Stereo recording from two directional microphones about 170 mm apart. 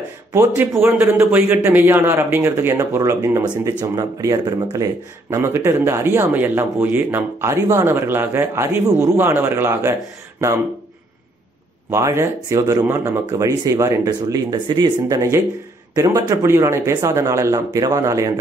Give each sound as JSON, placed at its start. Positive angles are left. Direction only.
{"t": 0.3, "sound": "speech", "side_deg": -20}
{"t": 11.9, "sound": "speech", "side_deg": -15}